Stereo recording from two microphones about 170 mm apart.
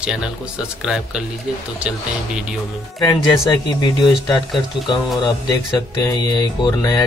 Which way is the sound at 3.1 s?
25° left (ahead or behind).